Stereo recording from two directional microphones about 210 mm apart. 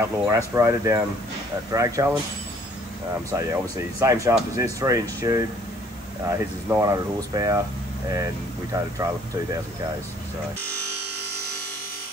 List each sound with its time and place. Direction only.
0.0 s speech: 10° right (ahead or behind)
3.3 s speech: 15° right (ahead or behind)